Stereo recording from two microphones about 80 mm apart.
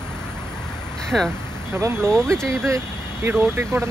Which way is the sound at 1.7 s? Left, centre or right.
Right.